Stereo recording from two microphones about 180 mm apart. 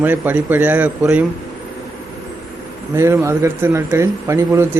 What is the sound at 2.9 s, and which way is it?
A man's voice, 15° right (ahead or behind).